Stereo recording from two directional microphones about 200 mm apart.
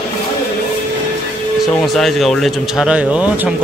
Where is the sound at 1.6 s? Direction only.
Centre (ahead or behind).